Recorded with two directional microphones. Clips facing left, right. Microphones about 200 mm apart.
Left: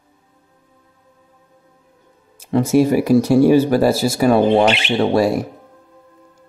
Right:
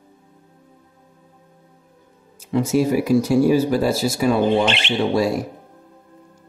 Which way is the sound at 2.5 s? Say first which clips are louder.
Left 4 dB; 60° left (ahead or behind).